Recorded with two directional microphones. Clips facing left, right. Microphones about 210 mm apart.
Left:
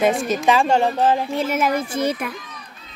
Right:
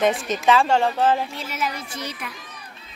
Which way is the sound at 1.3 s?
50° left (ahead or behind).